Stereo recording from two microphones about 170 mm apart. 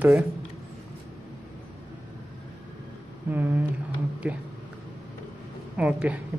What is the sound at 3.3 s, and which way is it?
Speech, 10° right (ahead or behind).